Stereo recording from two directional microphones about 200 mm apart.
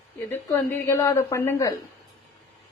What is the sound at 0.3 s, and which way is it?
Speech, 10° left (ahead or behind).